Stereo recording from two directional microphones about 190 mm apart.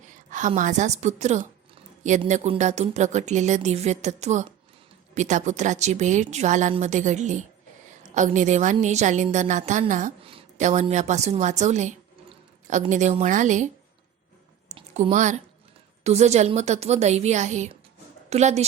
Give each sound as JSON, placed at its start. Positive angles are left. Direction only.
{"t": 0.3, "sound": "a woman's voice", "side_deg": -40}
{"t": 14.7, "sound": "a sound", "side_deg": -30}
{"t": 15.1, "sound": "speech", "side_deg": -40}